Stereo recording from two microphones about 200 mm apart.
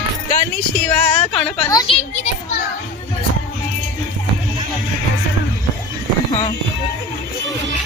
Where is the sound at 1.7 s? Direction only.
25° left (ahead or behind).